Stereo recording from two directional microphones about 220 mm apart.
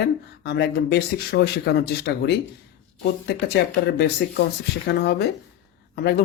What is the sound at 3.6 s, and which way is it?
Speech, 50° left (ahead or behind).